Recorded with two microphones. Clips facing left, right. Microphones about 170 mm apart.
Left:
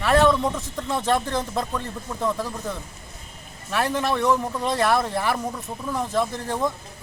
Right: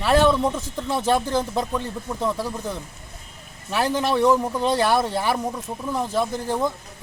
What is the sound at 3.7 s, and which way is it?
Speech, 25° right (ahead or behind).